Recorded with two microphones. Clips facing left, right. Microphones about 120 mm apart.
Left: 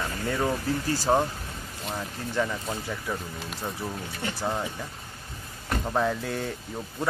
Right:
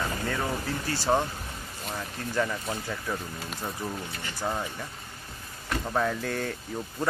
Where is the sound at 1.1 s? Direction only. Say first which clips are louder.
Left 2 dB; 20° left (ahead or behind).